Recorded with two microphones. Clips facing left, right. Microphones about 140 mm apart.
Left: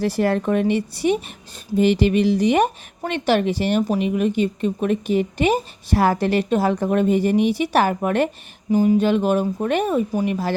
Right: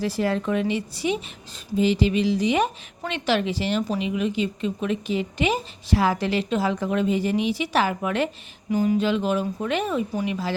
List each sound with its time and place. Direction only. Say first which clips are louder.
0.0 s a woman's voice: left 4 dB; 60° left (ahead or behind)
8.7 s a sound: left 5 dB; 30° left (ahead or behind)
9.0 s a woman's voice: left 5 dB; 55° left (ahead or behind)